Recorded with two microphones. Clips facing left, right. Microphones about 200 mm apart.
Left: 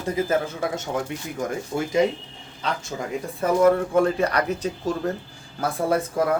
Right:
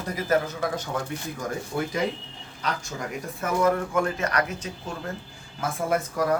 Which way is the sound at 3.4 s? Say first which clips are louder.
Left 5 dB; 30° left (ahead or behind).